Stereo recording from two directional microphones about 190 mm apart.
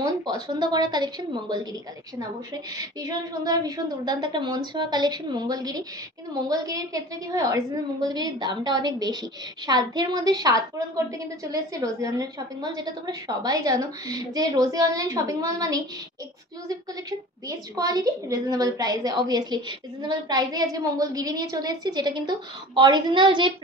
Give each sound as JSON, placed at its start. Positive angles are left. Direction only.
{"t": 0.0, "sound": "a woman's voice", "side_deg": -20}
{"t": 17.5, "sound": "a woman's voice", "side_deg": -20}